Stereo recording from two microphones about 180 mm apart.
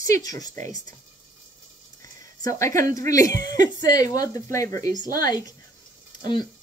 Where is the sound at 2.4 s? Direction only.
15° left (ahead or behind).